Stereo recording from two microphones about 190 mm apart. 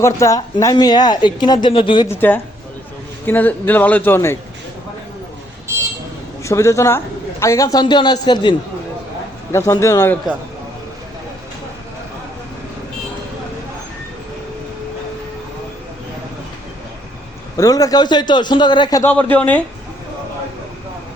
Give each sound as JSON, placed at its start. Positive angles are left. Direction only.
{"t": 0.0, "sound": "speech", "side_deg": 15}
{"t": 2.0, "sound": "a man's voice", "side_deg": 10}
{"t": 6.4, "sound": "a man's voice", "side_deg": 15}
{"t": 17.6, "sound": "speech", "side_deg": 20}
{"t": 19.1, "sound": "a man's voice", "side_deg": 10}